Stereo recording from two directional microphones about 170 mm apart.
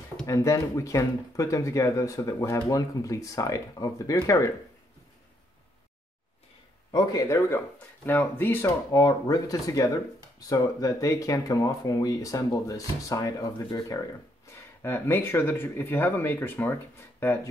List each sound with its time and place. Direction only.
0.3 s speech: 15° left (ahead or behind)
6.9 s speech: 25° left (ahead or behind)